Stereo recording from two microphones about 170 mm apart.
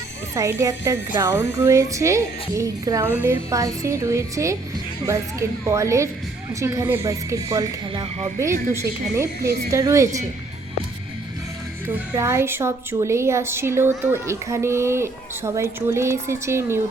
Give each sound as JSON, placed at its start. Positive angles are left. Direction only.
{"t": 0.3, "sound": "a woman's voice", "side_deg": -20}
{"t": 11.9, "sound": "a woman's voice", "side_deg": -15}